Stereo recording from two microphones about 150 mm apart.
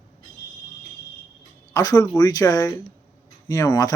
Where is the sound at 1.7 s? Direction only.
25° left (ahead or behind).